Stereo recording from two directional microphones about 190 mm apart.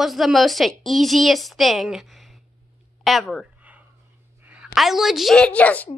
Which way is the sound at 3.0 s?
Centre (ahead or behind).